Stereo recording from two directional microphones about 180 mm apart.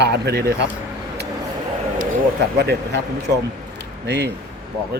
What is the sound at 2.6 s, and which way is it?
Speech, 65° right (ahead or behind).